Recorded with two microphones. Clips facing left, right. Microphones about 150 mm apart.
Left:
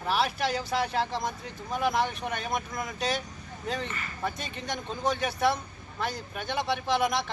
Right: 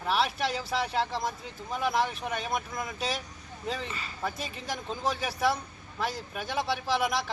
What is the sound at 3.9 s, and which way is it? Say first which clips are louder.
Speech: left 1 dB; 15° right (ahead or behind).